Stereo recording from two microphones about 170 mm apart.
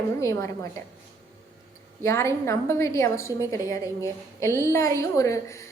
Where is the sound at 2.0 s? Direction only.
15° left (ahead or behind).